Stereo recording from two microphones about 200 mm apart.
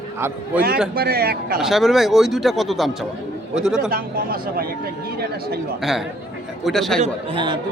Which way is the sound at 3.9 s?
50° right (ahead or behind).